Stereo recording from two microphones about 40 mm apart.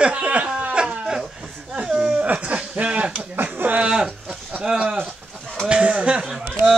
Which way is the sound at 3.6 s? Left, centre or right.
Right.